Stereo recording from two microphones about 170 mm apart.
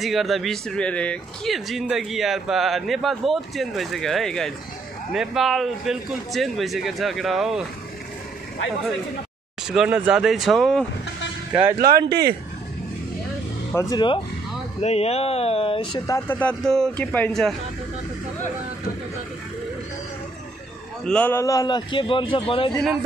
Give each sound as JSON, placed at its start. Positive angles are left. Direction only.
{"t": 0.0, "sound": "speech", "side_deg": 0}
{"t": 9.7, "sound": "speech", "side_deg": -5}
{"t": 11.8, "sound": "speech", "side_deg": -65}
{"t": 13.7, "sound": "a man's voice", "side_deg": 25}
{"t": 14.8, "sound": "speech", "side_deg": 40}
{"t": 16.1, "sound": "a man's voice", "side_deg": 10}
{"t": 21.0, "sound": "a man's voice", "side_deg": 5}
{"t": 22.7, "sound": "speech", "side_deg": 5}